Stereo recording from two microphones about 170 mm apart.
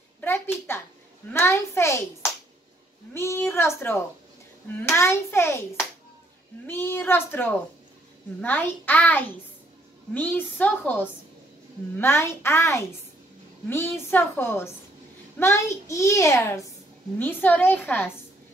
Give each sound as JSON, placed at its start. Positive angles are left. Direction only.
{"t": 0.2, "sound": "a child's voice", "side_deg": 15}
{"t": 3.1, "sound": "a child's voice", "side_deg": 15}
{"t": 6.7, "sound": "a child's voice", "side_deg": 15}